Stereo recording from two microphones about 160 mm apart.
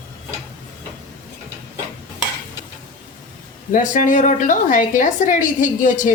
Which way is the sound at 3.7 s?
55° left (ahead or behind).